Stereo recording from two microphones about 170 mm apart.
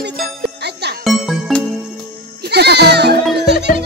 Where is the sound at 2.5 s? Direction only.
75° right (ahead or behind).